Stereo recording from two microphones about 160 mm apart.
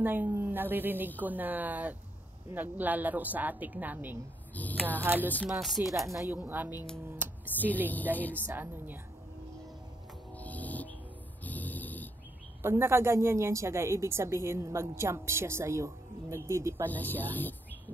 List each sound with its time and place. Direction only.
0.0 s a woman's voice: 10° right (ahead or behind)
4.6 s a sound: 10° left (ahead or behind)
5.0 s a woman's voice: 10° right (ahead or behind)
5.5 s speech: centre (ahead or behind)
5.9 s a woman's voice: 15° right (ahead or behind)
7.5 s speech: 10° left (ahead or behind)
8.1 s a woman's voice: 15° right (ahead or behind)
10.3 s music: 10° left (ahead or behind)
11.4 s a sound: 10° left (ahead or behind)
12.6 s a woman's voice: 15° right (ahead or behind)
16.9 s speech: 10° left (ahead or behind)